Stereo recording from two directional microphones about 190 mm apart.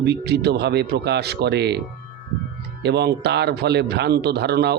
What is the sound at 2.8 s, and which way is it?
Speech, 60° right (ahead or behind).